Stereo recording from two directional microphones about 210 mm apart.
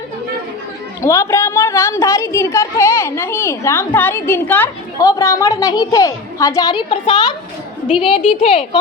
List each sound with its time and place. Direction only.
1.0 s a woman's voice: 15° left (ahead or behind)